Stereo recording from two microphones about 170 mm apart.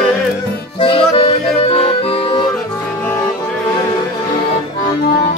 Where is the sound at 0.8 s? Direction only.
30° left (ahead or behind).